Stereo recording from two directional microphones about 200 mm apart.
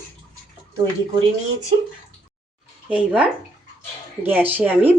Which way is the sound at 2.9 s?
5° right (ahead or behind).